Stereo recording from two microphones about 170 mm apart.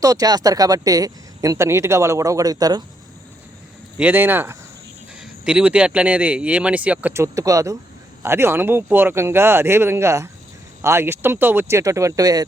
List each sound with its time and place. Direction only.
0.0 s speech: 20° right (ahead or behind)
3.9 s speech: 10° right (ahead or behind)